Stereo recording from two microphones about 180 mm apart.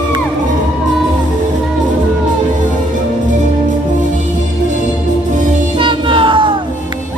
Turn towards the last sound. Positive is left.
turn(degrees=-30)  # may be behind; listen again after turning